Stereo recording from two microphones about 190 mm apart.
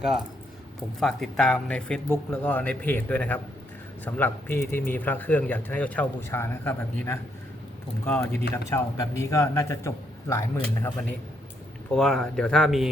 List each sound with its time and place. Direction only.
0.0 s speech: 5° right (ahead or behind)